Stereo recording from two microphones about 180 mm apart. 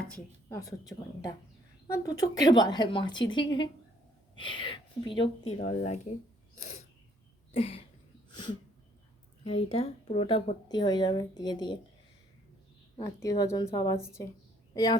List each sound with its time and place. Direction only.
0.4 s speech: 20° left (ahead or behind)
5.5 s speech: 45° left (ahead or behind)
6.6 s owl: 40° left (ahead or behind)
7.5 s a sound: 35° left (ahead or behind)
9.4 s speech: 35° left (ahead or behind)
13.1 s a woman's voice: 20° left (ahead or behind)